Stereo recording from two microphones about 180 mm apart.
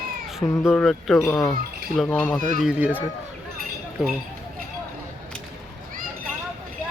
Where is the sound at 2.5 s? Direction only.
5° right (ahead or behind).